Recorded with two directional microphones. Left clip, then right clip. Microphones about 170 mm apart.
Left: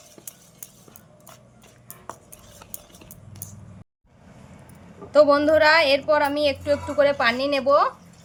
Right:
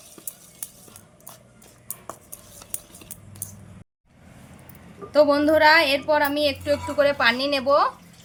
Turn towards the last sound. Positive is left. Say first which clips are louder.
# left 1 dB
turn(degrees=0)  # may be behind; listen again after turning